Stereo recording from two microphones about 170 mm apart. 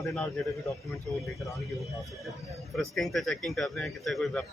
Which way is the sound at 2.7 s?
Centre (ahead or behind).